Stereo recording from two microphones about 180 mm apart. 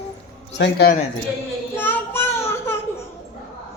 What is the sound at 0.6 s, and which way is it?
Speech, 65° left (ahead or behind).